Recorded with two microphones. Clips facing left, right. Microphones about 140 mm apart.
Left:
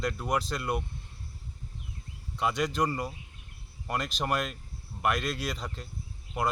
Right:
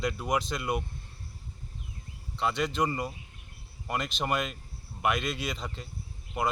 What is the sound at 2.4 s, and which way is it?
Speech, 10° left (ahead or behind).